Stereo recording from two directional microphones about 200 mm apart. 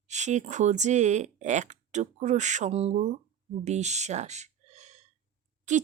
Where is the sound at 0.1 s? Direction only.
35° right (ahead or behind).